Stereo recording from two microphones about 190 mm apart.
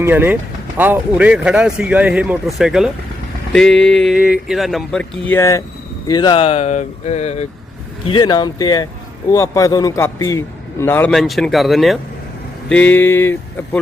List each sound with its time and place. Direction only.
0.0 s speech: 10° right (ahead or behind); by 7.4 s 35° left (ahead or behind)
8.0 s a man's voice: 25° left (ahead or behind); by 11.9 s centre (ahead or behind)
12.6 s a sound: 5° left (ahead or behind)